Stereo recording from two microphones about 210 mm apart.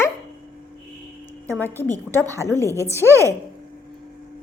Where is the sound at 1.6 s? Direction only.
10° left (ahead or behind).